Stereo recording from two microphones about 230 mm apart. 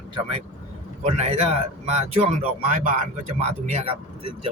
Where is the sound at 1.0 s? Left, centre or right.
Right.